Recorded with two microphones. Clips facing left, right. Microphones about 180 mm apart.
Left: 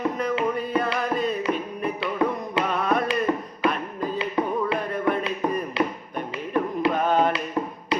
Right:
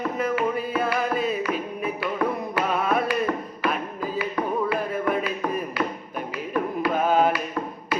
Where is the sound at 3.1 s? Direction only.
20° left (ahead or behind).